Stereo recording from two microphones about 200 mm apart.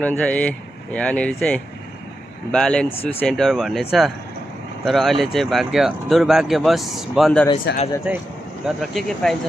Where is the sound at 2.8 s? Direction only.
30° left (ahead or behind).